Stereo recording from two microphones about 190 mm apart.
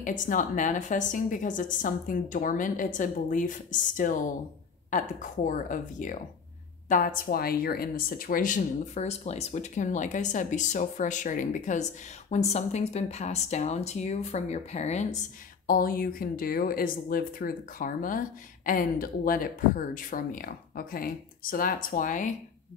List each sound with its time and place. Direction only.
0.0 s a woman's voice: 45° left (ahead or behind)
15.6 s a woman's voice: 50° left (ahead or behind)